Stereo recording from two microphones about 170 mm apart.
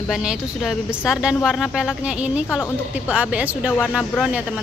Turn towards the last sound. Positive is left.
turn(degrees=-5)  # may be behind; listen again after turning